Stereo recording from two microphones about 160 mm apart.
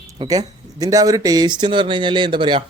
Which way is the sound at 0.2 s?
25° right (ahead or behind).